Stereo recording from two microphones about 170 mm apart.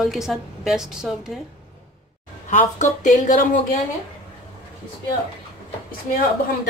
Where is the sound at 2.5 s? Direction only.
50° left (ahead or behind).